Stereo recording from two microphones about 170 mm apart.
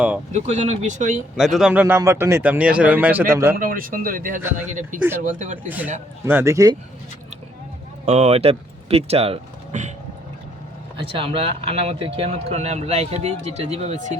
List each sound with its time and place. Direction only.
0.3 s speech: 40° right (ahead or behind)
1.4 s speech: centre (ahead or behind)
1.8 s a man's voice: 15° right (ahead or behind)
3.5 s speech: 55° right (ahead or behind)
5.6 s a man's voice: 10° right (ahead or behind)
8.0 s speech: 35° right (ahead or behind)
10.9 s speech: 35° right (ahead or behind)